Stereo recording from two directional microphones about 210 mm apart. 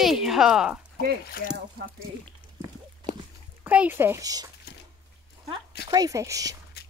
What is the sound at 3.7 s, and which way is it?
Speech, 10° right (ahead or behind).